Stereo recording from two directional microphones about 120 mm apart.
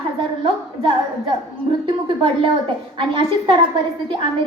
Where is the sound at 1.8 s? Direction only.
45° right (ahead or behind).